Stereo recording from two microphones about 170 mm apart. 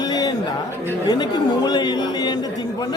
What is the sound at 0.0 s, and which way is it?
Music, 25° left (ahead or behind).